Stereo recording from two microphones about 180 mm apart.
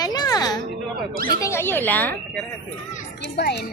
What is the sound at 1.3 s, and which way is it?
Speech, 15° left (ahead or behind).